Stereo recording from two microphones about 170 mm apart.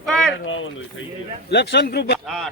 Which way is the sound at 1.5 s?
80° left.